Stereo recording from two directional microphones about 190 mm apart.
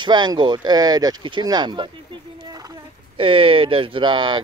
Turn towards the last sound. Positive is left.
turn(degrees=-25)  # may be behind; listen again after turning